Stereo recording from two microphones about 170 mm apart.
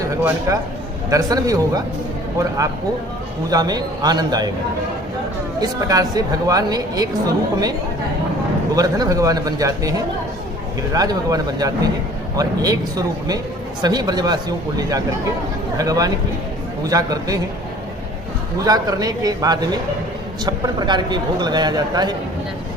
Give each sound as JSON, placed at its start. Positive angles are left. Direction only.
{"t": 0.1, "sound": "speech", "side_deg": -15}
{"t": 3.5, "sound": "speech", "side_deg": -20}
{"t": 5.5, "sound": "speech", "side_deg": -20}
{"t": 8.7, "sound": "speech", "side_deg": -20}
{"t": 10.9, "sound": "speech", "side_deg": -20}
{"t": 18.6, "sound": "speech", "side_deg": -20}